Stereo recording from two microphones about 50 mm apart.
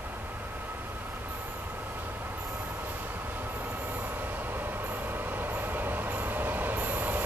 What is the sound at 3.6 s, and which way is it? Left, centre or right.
Train, right.